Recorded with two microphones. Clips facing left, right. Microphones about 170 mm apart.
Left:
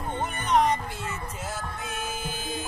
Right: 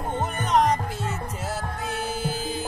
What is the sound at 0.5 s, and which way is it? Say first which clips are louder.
Music: right 1 dB; 40° right (ahead or behind).